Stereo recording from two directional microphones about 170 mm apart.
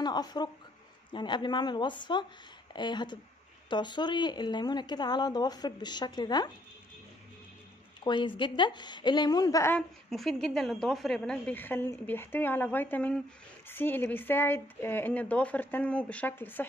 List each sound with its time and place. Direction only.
0.0 s speech: 25° left (ahead or behind)
8.0 s speech: 30° left (ahead or behind)
9.8 s a woman's voice: centre (ahead or behind)